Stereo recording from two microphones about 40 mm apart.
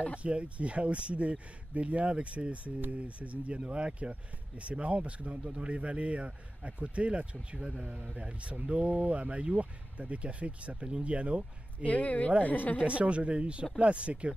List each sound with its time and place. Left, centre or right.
0.2 s speech: right
11.8 s speech: left
12.8 s speech: right